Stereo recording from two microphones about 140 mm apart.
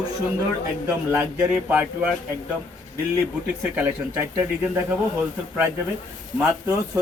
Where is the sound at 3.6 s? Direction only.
15° right (ahead or behind).